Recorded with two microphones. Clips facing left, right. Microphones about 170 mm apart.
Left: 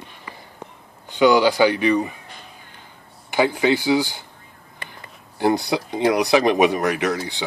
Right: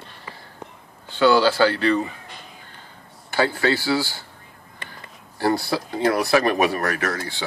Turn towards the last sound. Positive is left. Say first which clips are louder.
# left 3 dB
turn(degrees=15)  # may be behind; listen again after turning